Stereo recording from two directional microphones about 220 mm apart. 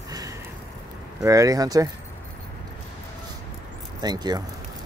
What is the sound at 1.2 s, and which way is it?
Speech, 15° right (ahead or behind).